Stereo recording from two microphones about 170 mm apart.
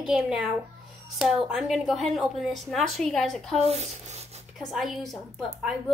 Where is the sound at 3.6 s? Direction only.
40° right (ahead or behind).